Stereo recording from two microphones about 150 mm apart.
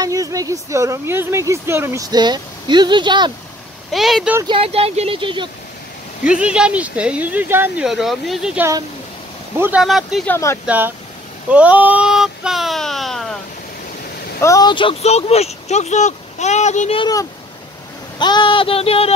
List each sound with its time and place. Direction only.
0.0 s speech: 25° right (ahead or behind)
3.9 s speech: centre (ahead or behind)
4.5 s speech: 40° right (ahead or behind)
6.2 s speech: 5° right (ahead or behind)
10.2 s speech: 15° left (ahead or behind)
11.5 s speech: 10° right (ahead or behind)
14.4 s speech: 25° left (ahead or behind); by 16.9 s 50° left (ahead or behind)
18.2 s a sound: 30° left (ahead or behind)